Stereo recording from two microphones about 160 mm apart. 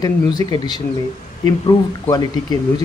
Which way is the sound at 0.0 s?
25° left (ahead or behind).